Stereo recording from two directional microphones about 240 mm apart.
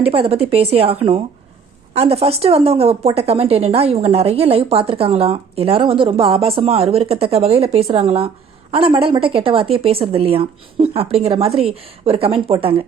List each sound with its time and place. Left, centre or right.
0.0 s a woman's voice: right